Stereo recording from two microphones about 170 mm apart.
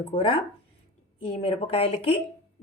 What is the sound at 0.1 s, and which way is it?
Speech, 30° left (ahead or behind).